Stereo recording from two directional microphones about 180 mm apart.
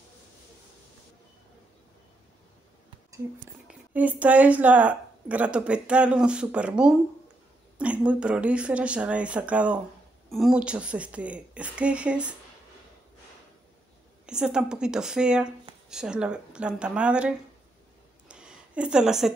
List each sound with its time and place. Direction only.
3.6 s a woman's voice: 10° right (ahead or behind)
14.2 s speech: 5° right (ahead or behind)
18.3 s a sound: 5° right (ahead or behind)